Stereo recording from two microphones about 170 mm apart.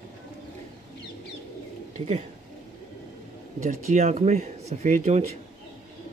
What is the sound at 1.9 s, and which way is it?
Speech, 40° right (ahead or behind).